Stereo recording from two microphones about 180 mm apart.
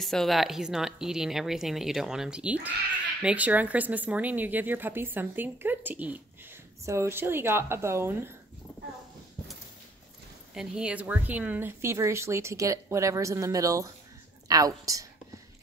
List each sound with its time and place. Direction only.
0.0 s a woman's voice: centre (ahead or behind)
10.5 s a woman's voice: 5° right (ahead or behind); by 15.0 s 20° right (ahead or behind)